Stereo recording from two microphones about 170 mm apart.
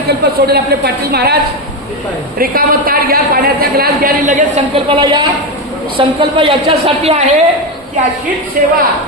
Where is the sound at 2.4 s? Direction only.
60° right (ahead or behind).